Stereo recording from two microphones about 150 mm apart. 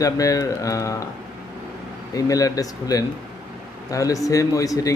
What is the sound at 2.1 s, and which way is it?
Speech, 25° left (ahead or behind).